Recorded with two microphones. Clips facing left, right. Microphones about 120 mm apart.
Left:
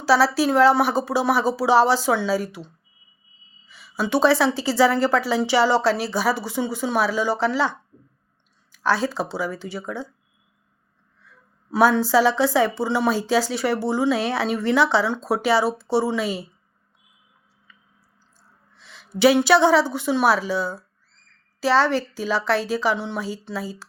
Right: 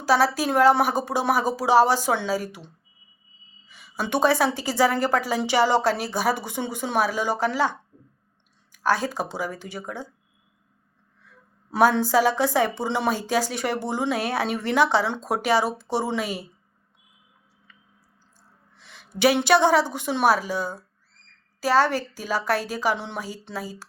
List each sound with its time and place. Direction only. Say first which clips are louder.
0.0 s a woman's voice: left 3 dB; 50° right (ahead or behind)
3.7 s a woman's voice: left 3 dB; 45° right (ahead or behind)
11.7 s a woman's voice: left 2 dB; 45° right (ahead or behind)
18.8 s a sound: left 3 dB; 45° right (ahead or behind)
19.5 s a woman's voice: left 2 dB; 45° right (ahead or behind)